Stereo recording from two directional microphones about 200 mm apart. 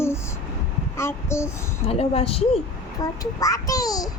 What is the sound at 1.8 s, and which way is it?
Speech, 30° left (ahead or behind).